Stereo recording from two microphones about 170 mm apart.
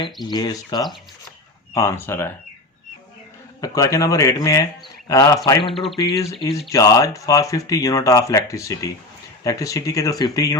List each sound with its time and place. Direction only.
0.3 s speech: 25° left (ahead or behind)
3.6 s speech: 20° left (ahead or behind)
5.7 s speech: centre (ahead or behind)
6.0 s speech: 20° left (ahead or behind)